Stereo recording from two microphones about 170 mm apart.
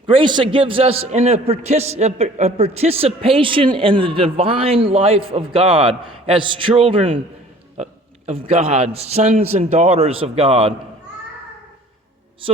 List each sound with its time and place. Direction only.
0.1 s a man's voice: 30° right (ahead or behind)